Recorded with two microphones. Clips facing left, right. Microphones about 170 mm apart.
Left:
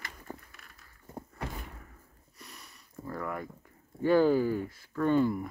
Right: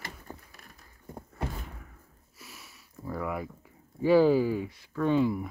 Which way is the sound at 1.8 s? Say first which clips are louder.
Right 1 dB; centre (ahead or behind).